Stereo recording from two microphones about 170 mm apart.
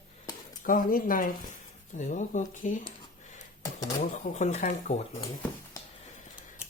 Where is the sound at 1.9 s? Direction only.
45° left (ahead or behind).